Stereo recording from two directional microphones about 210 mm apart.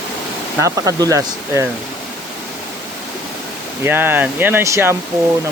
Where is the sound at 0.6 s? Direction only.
15° right (ahead or behind).